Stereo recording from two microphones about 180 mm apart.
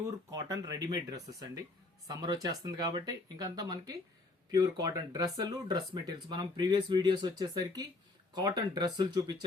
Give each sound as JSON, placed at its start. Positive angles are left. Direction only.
{"t": 0.0, "sound": "speech", "side_deg": -20}